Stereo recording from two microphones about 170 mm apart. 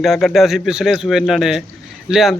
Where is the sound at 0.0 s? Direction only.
Centre (ahead or behind).